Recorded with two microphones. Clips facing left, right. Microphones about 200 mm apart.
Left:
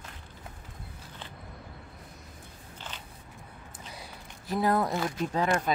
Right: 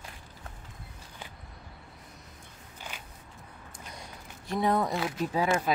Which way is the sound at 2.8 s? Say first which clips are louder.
Right 1 dB; 10° right (ahead or behind).